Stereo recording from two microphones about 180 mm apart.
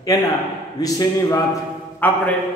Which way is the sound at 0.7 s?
20° left (ahead or behind).